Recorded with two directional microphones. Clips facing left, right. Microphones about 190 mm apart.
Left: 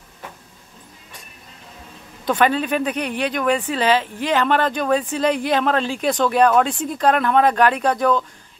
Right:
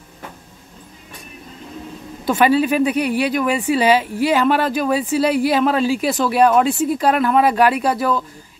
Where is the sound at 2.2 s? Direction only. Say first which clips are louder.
Right 3 dB; 10° right (ahead or behind).